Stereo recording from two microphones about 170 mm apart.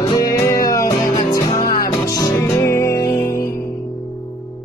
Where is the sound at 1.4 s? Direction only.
55° left (ahead or behind).